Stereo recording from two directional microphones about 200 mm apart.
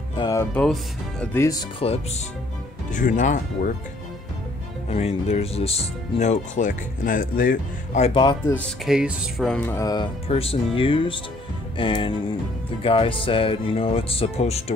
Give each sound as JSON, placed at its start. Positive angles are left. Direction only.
{"t": 0.2, "sound": "speech", "side_deg": 15}
{"t": 2.9, "sound": "speech", "side_deg": 40}
{"t": 4.8, "sound": "speech", "side_deg": 35}
{"t": 8.5, "sound": "speech", "side_deg": 0}
{"t": 9.7, "sound": "speech", "side_deg": 15}